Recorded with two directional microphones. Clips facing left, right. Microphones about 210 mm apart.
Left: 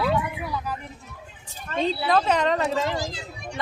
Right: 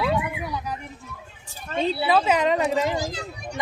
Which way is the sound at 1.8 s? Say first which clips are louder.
Right 1 dB; 5° right (ahead or behind).